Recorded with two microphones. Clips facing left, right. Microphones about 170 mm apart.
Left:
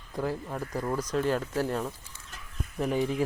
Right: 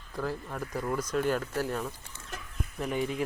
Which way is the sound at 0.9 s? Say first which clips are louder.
Left 1 dB; 35° left (ahead or behind).